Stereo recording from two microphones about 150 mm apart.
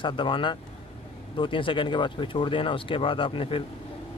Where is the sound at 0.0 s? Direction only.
35° left (ahead or behind).